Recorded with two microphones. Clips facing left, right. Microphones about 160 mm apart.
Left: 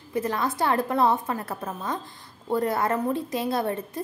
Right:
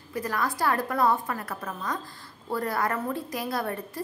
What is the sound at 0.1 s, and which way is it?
A woman's voice, 25° left (ahead or behind).